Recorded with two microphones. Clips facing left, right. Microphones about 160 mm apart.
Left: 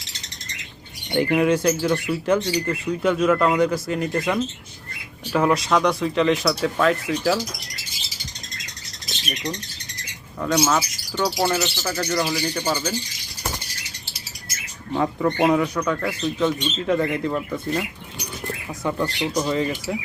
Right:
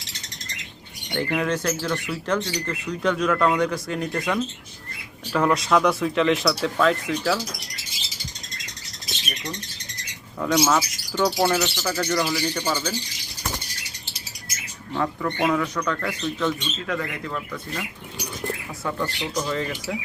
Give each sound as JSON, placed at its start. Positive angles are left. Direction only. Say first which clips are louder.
{"t": 1.1, "sound": "speech", "louder": "left 6 dB", "side_deg": 15}
{"t": 6.7, "sound": "speech", "louder": "left 1 dB", "side_deg": 10}
{"t": 10.4, "sound": "speech", "louder": "even", "side_deg": 0}
{"t": 14.9, "sound": "speech", "louder": "left 4 dB", "side_deg": 25}
{"t": 15.6, "sound": "speech", "louder": "left 3 dB", "side_deg": 10}
{"t": 16.5, "sound": "speech", "louder": "left 5 dB", "side_deg": 25}
{"t": 18.9, "sound": "speech", "louder": "left 4 dB", "side_deg": 20}